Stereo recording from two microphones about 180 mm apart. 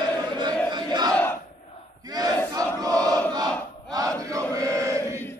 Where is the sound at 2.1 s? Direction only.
20° right (ahead or behind).